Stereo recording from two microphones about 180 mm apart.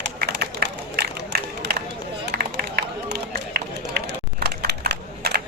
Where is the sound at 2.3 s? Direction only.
60° right (ahead or behind).